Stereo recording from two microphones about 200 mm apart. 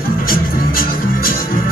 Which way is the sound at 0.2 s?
45° left (ahead or behind).